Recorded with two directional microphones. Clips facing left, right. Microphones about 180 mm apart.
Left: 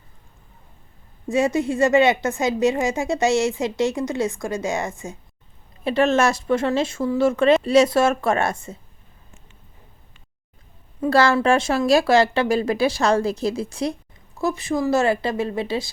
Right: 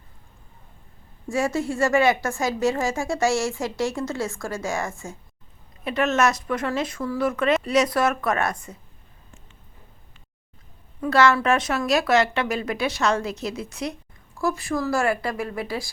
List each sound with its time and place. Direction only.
1.3 s a woman's voice: 20° left (ahead or behind)
5.8 s a woman's voice: 30° left (ahead or behind)
11.0 s speech: 30° left (ahead or behind)
14.3 s a woman's voice: 20° left (ahead or behind)